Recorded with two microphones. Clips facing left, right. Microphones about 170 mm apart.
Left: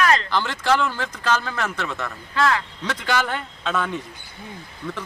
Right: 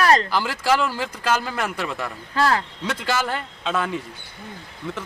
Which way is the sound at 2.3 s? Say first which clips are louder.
Right 1 dB; 35° right (ahead or behind).